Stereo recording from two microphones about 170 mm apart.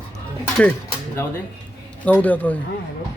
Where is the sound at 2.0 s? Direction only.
10° left (ahead or behind).